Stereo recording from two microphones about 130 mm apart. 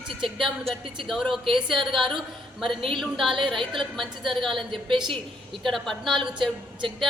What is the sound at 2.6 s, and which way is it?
Speech, 45° right (ahead or behind).